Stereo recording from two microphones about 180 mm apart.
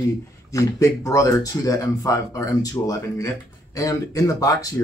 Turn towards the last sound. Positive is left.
turn(degrees=20)  # may be behind; listen again after turning